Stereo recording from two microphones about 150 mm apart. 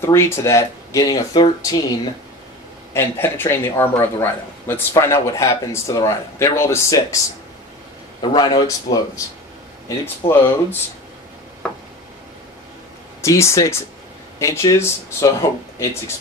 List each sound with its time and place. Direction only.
0.0 s speech: 20° left (ahead or behind)
2.9 s speech: 15° left (ahead or behind)
8.2 s speech: 35° left (ahead or behind); by 10.8 s 15° left (ahead or behind)
13.2 s speech: 20° left (ahead or behind)